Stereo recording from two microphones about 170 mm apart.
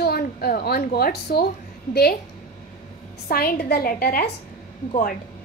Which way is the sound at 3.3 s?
60° left (ahead or behind).